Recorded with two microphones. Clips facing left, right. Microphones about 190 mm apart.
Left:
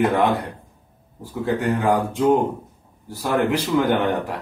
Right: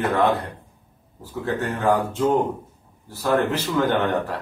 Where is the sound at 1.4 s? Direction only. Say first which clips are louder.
Left 3 dB; 10° left (ahead or behind).